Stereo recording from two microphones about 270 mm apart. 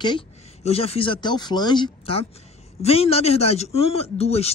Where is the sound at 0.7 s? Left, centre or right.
Left.